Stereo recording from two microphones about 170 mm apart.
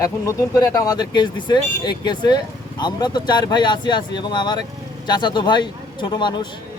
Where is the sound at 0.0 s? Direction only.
20° left (ahead or behind).